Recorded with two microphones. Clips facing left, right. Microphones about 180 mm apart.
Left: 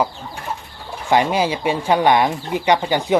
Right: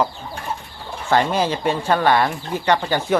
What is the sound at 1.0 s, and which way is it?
Speech, 10° left (ahead or behind).